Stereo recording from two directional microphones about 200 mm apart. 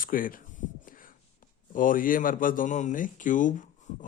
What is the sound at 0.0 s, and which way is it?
Speech, 45° left (ahead or behind).